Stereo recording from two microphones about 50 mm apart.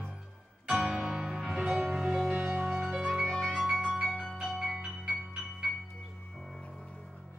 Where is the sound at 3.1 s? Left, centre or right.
Centre.